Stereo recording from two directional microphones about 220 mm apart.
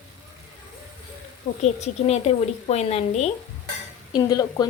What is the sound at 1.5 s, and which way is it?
Speech, 40° left (ahead or behind).